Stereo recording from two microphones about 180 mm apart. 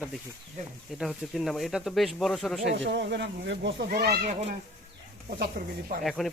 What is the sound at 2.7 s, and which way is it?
Speech, 80° right.